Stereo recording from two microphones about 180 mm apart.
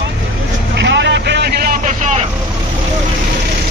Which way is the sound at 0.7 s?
75° right (ahead or behind).